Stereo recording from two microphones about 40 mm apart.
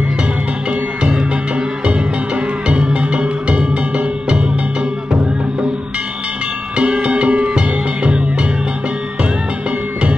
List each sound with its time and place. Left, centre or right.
2.7 s music: right
6.8 s music: right